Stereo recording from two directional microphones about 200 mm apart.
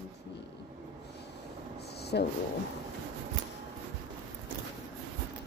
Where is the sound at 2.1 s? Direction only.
55° left (ahead or behind).